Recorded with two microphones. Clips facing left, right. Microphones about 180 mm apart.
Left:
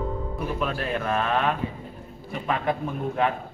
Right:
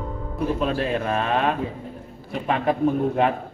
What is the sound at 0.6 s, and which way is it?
A man's voice, 30° right (ahead or behind).